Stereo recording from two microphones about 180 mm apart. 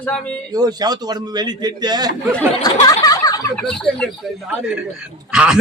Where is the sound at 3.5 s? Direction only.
5° left (ahead or behind).